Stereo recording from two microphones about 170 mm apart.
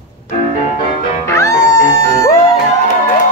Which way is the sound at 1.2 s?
15° left (ahead or behind).